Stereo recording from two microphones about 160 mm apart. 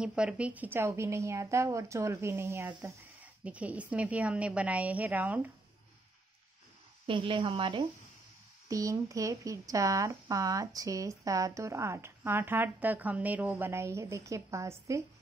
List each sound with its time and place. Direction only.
0.0 s speech: 5° right (ahead or behind)
7.1 s a woman's voice: 30° right (ahead or behind)